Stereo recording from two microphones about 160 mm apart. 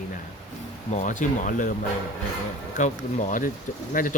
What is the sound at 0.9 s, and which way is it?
Speech, 50° left (ahead or behind).